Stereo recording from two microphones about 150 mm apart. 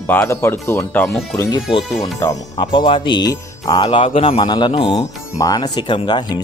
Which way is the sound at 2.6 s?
35° left (ahead or behind).